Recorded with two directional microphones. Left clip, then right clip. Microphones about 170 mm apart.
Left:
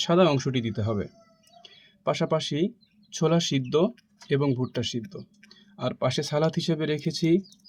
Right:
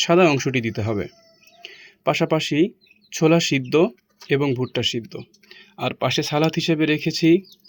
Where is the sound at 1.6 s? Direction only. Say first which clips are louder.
Right 6 dB; 20° right (ahead or behind).